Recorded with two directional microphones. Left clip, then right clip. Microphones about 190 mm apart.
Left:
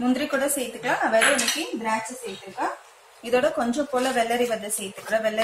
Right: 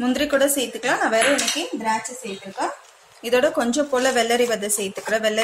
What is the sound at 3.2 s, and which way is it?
A woman's voice, 45° right (ahead or behind).